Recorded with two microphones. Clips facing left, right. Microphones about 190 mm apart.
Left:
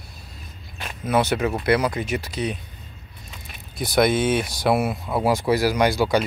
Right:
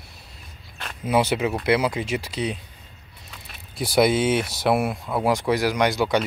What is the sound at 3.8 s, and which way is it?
Speech, 10° right (ahead or behind).